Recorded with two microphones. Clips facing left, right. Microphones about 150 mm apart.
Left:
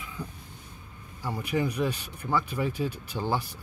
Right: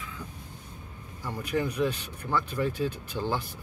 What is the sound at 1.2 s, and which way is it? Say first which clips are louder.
Speech: left 1 dB; 10° left (ahead or behind).